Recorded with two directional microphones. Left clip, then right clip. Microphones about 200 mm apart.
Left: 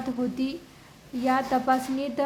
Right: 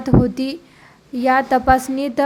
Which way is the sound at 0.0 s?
35° right (ahead or behind).